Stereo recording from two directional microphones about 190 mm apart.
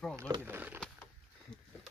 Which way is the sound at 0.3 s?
10° right (ahead or behind).